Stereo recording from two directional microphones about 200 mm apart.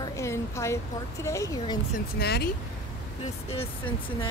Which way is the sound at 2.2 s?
55° left (ahead or behind).